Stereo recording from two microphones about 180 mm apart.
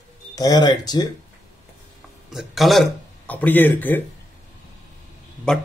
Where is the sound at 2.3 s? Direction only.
Centre (ahead or behind).